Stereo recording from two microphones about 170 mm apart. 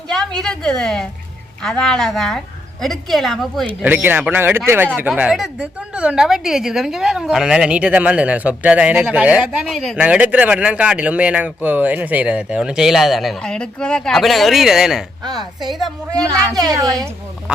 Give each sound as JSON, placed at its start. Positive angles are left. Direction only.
{"t": 0.1, "sound": "a woman's voice", "side_deg": 5}
{"t": 3.8, "sound": "a woman's voice", "side_deg": -10}
{"t": 16.1, "sound": "a child's voice", "side_deg": -20}